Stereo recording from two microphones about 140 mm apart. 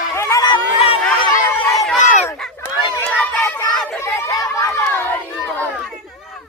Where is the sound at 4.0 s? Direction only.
20° left (ahead or behind).